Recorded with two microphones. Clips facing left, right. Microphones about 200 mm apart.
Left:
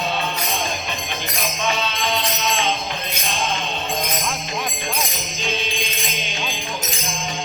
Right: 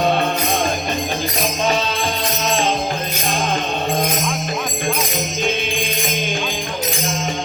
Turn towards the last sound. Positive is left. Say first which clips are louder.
# right 7 dB
turn(degrees=-50)  # may be behind; listen again after turning